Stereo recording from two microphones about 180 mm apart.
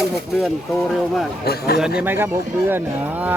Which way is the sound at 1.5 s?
60° left (ahead or behind).